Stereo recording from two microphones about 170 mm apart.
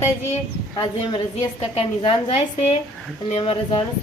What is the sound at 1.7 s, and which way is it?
Speech, 35° left (ahead or behind).